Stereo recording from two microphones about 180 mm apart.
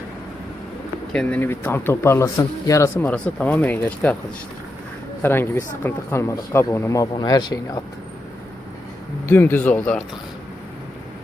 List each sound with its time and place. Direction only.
1.1 s speech: 5° left (ahead or behind)
5.2 s speech: 10° left (ahead or behind)
9.2 s speech: 10° left (ahead or behind)